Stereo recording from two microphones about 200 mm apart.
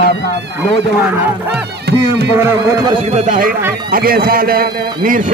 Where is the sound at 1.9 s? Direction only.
50° right (ahead or behind).